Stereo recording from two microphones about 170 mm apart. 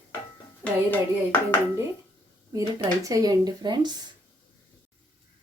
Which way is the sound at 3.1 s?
20° right (ahead or behind).